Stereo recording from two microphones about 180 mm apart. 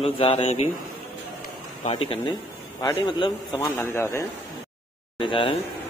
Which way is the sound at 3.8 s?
15° left (ahead or behind).